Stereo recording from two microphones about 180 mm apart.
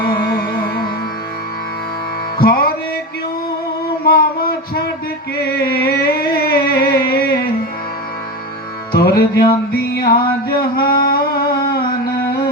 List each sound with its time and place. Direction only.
2.4 s music: 60° left (ahead or behind)
4.0 s music: 55° left (ahead or behind)
5.5 s a sound: 60° left (ahead or behind)
8.9 s music: 60° left (ahead or behind)